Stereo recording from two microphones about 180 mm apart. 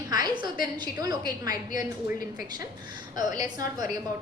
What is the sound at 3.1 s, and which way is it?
Speech, 45° left (ahead or behind).